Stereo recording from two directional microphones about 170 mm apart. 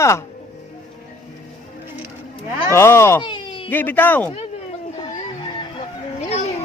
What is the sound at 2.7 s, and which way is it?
Speech, 15° left (ahead or behind).